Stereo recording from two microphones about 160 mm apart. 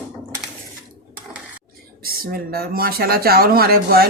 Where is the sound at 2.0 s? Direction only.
70° right (ahead or behind).